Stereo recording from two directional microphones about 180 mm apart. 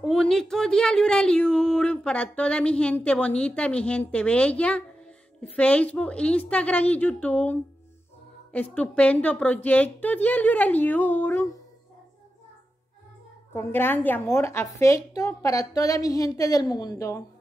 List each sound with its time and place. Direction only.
0.0 s a woman's voice: 5° left (ahead or behind)
8.5 s a woman's voice: 5° left (ahead or behind)
13.5 s a woman's voice: 10° left (ahead or behind)